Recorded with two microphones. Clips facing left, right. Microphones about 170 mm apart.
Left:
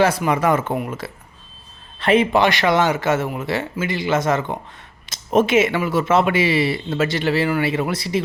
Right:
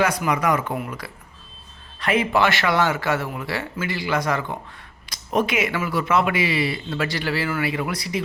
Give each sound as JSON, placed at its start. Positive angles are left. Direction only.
{"t": 0.0, "sound": "speech", "side_deg": 30}